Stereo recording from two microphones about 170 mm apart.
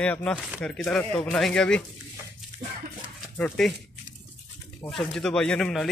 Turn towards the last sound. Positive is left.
turn(degrees=5)  # may be behind; listen again after turning